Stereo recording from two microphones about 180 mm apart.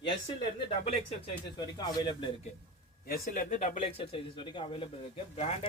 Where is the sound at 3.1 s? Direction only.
50° left (ahead or behind).